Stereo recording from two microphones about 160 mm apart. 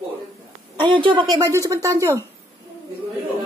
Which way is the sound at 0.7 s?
30° right (ahead or behind).